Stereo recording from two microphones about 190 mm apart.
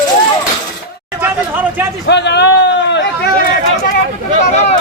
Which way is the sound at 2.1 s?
65° left (ahead or behind).